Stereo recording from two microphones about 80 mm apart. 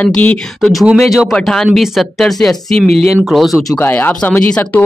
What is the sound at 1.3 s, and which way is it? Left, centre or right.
Speech, centre.